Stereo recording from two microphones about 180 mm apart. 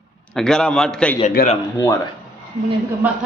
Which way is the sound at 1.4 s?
60° left (ahead or behind).